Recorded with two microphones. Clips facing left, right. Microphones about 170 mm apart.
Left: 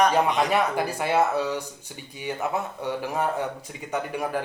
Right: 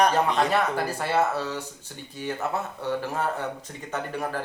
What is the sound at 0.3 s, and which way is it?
Speech, 15° left (ahead or behind).